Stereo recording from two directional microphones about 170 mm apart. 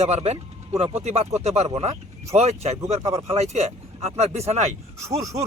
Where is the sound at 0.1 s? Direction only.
40° right (ahead or behind).